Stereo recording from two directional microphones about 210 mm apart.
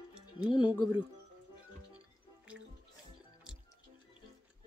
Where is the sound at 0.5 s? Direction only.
20° left (ahead or behind).